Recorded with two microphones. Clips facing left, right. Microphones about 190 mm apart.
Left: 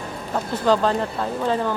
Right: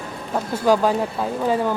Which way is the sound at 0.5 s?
10° right (ahead or behind).